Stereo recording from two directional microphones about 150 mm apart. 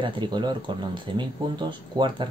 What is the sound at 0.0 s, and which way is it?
Speech, 30° right (ahead or behind).